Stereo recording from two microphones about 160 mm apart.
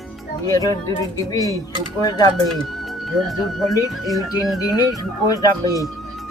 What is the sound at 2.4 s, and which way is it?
Speech, centre (ahead or behind).